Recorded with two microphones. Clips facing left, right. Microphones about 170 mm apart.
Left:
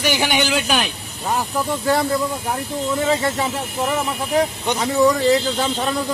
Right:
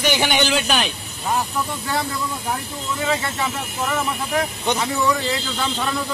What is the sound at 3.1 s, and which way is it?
Speech, 30° left (ahead or behind).